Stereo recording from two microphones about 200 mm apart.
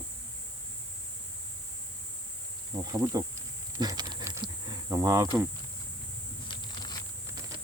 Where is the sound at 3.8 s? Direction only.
20° right (ahead or behind).